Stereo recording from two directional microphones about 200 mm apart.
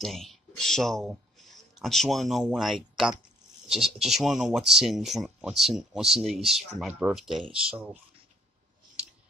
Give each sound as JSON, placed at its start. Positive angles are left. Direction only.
{"t": 0.0, "sound": "speech", "side_deg": 0}